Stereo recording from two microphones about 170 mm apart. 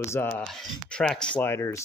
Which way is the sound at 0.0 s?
15° left (ahead or behind).